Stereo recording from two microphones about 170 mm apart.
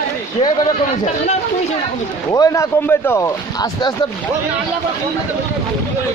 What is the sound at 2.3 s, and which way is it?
Speech, 20° left (ahead or behind).